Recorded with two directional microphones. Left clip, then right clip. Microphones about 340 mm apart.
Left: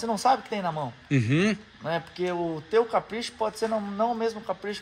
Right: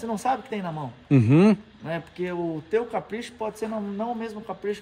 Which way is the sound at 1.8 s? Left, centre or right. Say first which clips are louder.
Left 6 dB; centre.